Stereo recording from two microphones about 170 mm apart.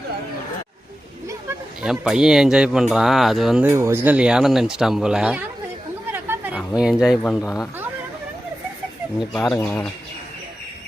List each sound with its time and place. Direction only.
1.8 s speech: 5° right (ahead or behind)
3.7 s speech: 15° right (ahead or behind)
6.1 s a sound: 10° right (ahead or behind)
6.6 s speech: 5° right (ahead or behind)
7.3 s speech: 20° left (ahead or behind)
9.3 s speech: 5° left (ahead or behind)